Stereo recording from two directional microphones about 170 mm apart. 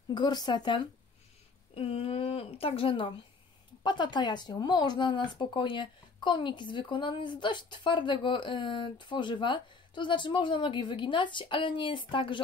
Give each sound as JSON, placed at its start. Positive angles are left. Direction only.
{"t": 0.1, "sound": "speech", "side_deg": 25}